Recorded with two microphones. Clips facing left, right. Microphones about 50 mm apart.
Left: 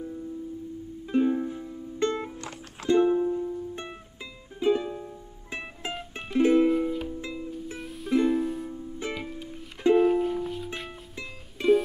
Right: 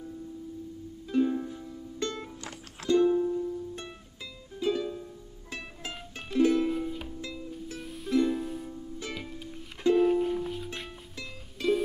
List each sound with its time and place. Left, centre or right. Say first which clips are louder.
1.0 s music: left 3 dB; left
6.7 s music: left 6 dB; centre
7.2 s music: left 4 dB; left
7.8 s music: left 2 dB; centre
11.1 s music: left 2 dB; left